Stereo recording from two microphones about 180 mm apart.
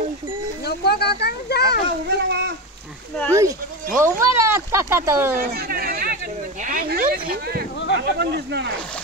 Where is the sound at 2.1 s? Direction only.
70° right (ahead or behind).